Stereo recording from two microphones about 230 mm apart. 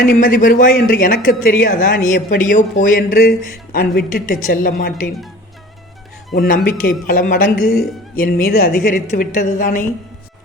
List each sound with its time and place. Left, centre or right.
0.2 s speech: left
6.3 s speech: left